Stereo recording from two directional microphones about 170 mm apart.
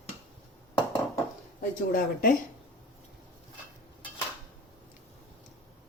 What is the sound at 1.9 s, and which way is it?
Speech, 60° left (ahead or behind).